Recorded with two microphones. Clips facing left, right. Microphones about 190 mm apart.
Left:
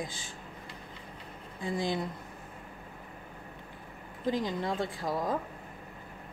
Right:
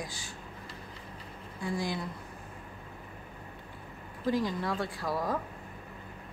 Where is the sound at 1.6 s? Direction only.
20° left (ahead or behind).